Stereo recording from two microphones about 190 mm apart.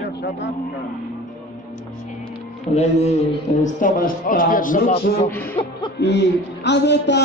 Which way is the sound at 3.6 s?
45° left (ahead or behind).